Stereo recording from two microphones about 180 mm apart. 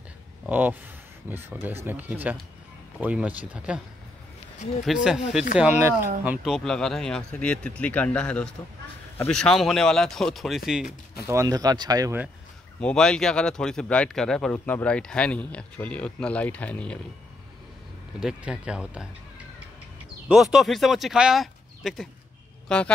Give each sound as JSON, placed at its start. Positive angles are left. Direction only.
{"t": 0.5, "sound": "speech", "side_deg": -10}
{"t": 4.8, "sound": "speech", "side_deg": -5}
{"t": 11.2, "sound": "speech", "side_deg": -15}
{"t": 12.8, "sound": "speech", "side_deg": 5}
{"t": 18.2, "sound": "speech", "side_deg": -5}
{"t": 20.2, "sound": "speech", "side_deg": -5}